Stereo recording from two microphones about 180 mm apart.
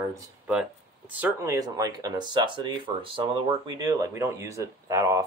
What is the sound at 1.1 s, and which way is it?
Speech, 10° right (ahead or behind).